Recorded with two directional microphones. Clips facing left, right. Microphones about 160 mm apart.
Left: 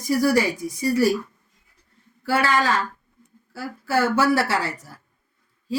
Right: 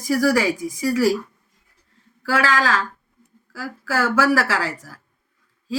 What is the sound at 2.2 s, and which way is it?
Speech, 90° right.